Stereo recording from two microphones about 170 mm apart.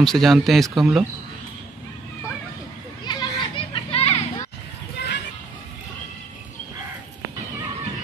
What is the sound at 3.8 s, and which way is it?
Children playing, 35° left (ahead or behind).